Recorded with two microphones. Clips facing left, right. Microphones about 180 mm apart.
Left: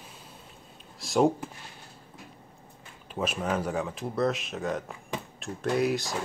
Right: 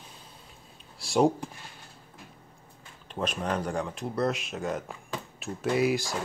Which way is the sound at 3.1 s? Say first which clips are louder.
Left 1 dB; 5° left (ahead or behind).